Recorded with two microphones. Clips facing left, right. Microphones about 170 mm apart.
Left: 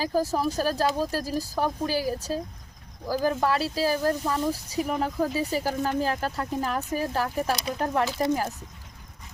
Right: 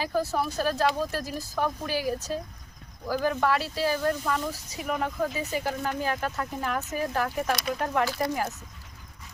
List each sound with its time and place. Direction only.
0.0 s speech: 35° left (ahead or behind)
8.0 s speech: 20° left (ahead or behind)